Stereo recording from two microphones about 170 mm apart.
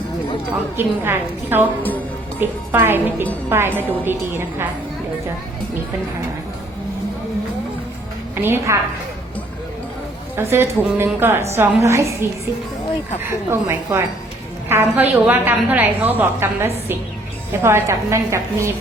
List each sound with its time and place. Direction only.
0.8 s a woman's voice: 15° right (ahead or behind)
8.4 s a woman's voice: 15° right (ahead or behind)
10.3 s a woman's voice: 15° right (ahead or behind)
13.5 s a woman's voice: 15° right (ahead or behind)